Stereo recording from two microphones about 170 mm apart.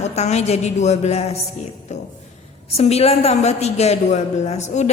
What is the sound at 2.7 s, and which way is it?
A woman's voice, 40° left (ahead or behind).